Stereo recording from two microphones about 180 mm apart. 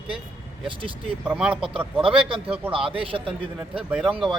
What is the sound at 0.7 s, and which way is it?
Speech, 30° right (ahead or behind).